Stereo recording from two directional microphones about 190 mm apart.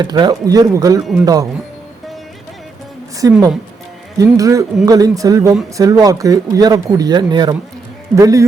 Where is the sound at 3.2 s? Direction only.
20° right (ahead or behind).